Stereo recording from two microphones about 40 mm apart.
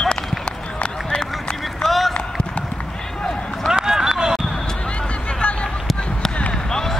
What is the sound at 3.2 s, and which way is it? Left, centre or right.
Run, left.